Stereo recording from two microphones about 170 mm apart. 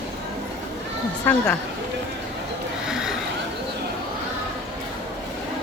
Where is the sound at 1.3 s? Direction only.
10° left (ahead or behind).